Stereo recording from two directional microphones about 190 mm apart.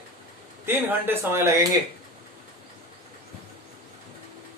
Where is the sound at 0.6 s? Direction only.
10° right (ahead or behind).